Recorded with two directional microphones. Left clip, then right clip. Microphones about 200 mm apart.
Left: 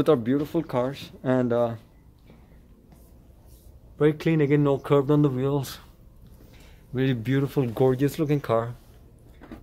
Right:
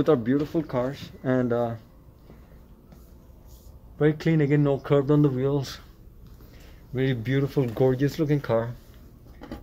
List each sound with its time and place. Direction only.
0.0 s speech: 15° left (ahead or behind)
4.0 s speech: 15° left (ahead or behind)
6.9 s speech: 15° left (ahead or behind)